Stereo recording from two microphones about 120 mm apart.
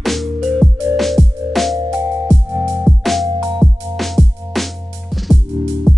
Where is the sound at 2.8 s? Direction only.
Centre (ahead or behind).